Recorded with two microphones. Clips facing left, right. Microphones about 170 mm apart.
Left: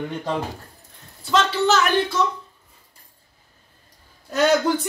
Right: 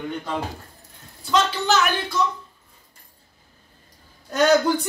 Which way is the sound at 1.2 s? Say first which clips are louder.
Left 2 dB; centre (ahead or behind).